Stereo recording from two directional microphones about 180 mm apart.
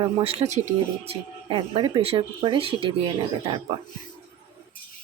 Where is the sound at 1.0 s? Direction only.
25° right (ahead or behind).